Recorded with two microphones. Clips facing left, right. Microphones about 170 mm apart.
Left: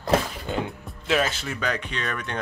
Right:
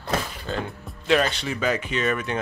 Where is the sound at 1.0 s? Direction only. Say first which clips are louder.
Right 3 dB; centre (ahead or behind).